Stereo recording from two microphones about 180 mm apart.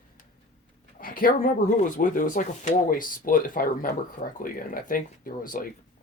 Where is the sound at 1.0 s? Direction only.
55° left (ahead or behind).